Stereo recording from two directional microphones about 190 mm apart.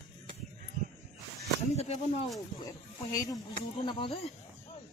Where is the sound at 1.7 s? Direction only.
35° left (ahead or behind).